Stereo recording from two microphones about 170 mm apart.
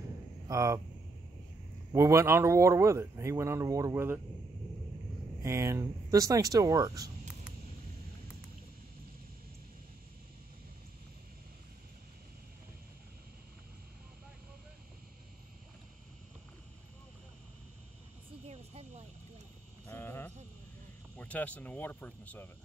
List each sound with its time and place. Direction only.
0.5 s speech: 20° right (ahead or behind)
1.9 s speech: 20° right (ahead or behind)
5.4 s speech: 15° right (ahead or behind)
18.5 s a sound: 40° right (ahead or behind)
19.9 s sheep: 15° left (ahead or behind)
21.2 s speech: 10° left (ahead or behind)